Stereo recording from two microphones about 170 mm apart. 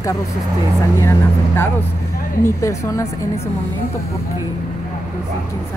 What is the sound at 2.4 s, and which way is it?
Speech, 15° left (ahead or behind).